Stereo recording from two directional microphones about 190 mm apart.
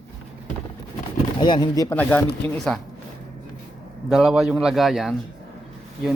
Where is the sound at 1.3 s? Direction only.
25° left (ahead or behind).